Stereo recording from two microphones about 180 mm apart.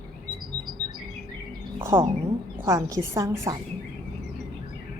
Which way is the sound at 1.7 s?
15° right (ahead or behind).